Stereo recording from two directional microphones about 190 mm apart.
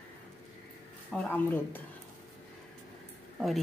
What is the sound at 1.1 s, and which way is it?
Speech, 10° left (ahead or behind).